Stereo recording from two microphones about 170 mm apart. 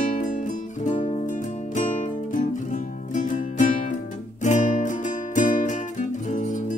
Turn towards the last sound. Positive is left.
turn(degrees=45)  # may be behind; listen again after turning